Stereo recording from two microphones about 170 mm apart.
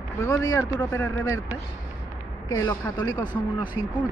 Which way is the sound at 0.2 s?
20° left (ahead or behind).